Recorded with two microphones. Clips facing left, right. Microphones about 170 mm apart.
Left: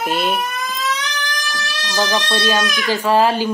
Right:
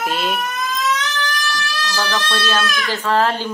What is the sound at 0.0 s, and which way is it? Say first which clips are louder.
Speech: left 2 dB; centre (ahead or behind).